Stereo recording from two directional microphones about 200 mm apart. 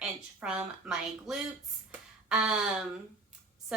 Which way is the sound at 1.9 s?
5° right (ahead or behind).